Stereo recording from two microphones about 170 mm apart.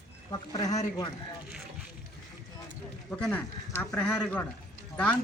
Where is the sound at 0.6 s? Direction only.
45° left (ahead or behind).